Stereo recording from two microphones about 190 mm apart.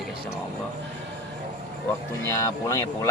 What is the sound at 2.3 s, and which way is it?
Speech, 15° left (ahead or behind).